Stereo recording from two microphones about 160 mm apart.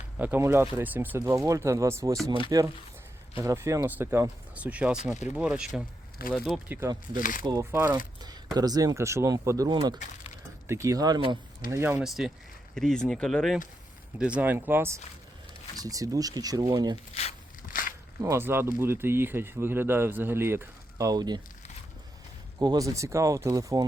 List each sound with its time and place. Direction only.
0.2 s speech: 15° right (ahead or behind)
6.2 s speech: 70° left (ahead or behind)
6.7 s speech: 15° right (ahead or behind)
7.1 s speech: 60° left (ahead or behind)
7.4 s speech: 20° right (ahead or behind)
11.7 s speech: 15° right (ahead or behind)
12.0 s speech: centre (ahead or behind); by 17.0 s 25° right (ahead or behind)
18.2 s speech: 15° right (ahead or behind)
22.5 s speech: 25° right (ahead or behind)